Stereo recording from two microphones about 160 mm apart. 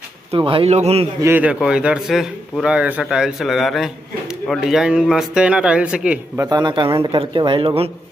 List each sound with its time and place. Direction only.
0.3 s a man's voice: 35° right (ahead or behind)
1.2 s a man's voice: 10° right (ahead or behind)
6.5 s a man's voice: 30° right (ahead or behind)